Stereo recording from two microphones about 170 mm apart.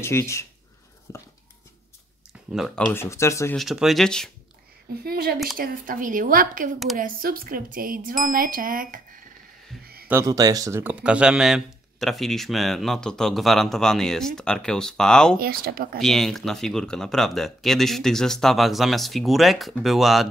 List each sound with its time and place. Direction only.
0.0 s speech: 15° left (ahead or behind)
2.5 s speech: centre (ahead or behind)
3.0 s speech: 15° left (ahead or behind)
3.5 s speech: centre (ahead or behind)
5.0 s speech: 65° right (ahead or behind)
5.6 s a woman's voice: 55° right (ahead or behind)
10.0 s speech: 15° right (ahead or behind); by 15.3 s 5° left (ahead or behind)
15.3 s speech: 60° right (ahead or behind)
16.0 s speech: centre (ahead or behind)